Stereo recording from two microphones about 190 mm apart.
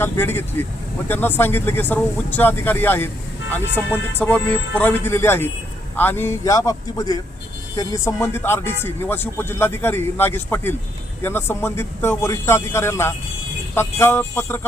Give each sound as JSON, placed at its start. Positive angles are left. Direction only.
{"t": 0.0, "sound": "speech", "side_deg": 10}